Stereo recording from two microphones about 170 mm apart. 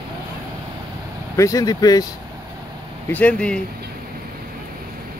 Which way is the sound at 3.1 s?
10° left (ahead or behind).